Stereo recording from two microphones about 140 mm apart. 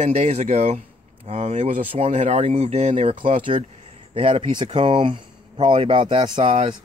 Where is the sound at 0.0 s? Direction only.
55° right (ahead or behind).